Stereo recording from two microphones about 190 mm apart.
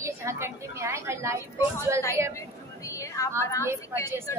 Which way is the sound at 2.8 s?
15° left (ahead or behind).